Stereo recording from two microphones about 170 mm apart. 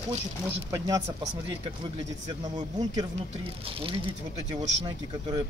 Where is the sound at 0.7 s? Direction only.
20° right (ahead or behind).